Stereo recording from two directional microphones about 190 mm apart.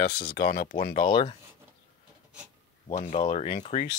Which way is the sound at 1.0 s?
25° left (ahead or behind).